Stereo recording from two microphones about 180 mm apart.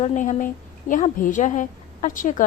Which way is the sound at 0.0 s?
40° left (ahead or behind).